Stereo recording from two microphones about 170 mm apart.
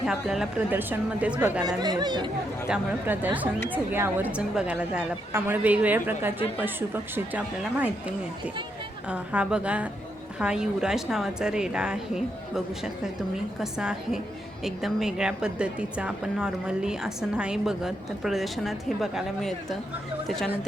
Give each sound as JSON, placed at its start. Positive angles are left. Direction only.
{"t": 0.0, "sound": "speech", "side_deg": 0}
{"t": 1.6, "sound": "speech", "side_deg": -25}
{"t": 2.6, "sound": "a woman's voice", "side_deg": -5}